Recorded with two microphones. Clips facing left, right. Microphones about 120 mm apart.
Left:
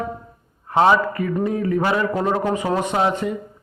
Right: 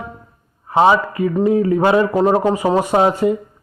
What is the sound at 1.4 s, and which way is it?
A man's voice, 25° right (ahead or behind).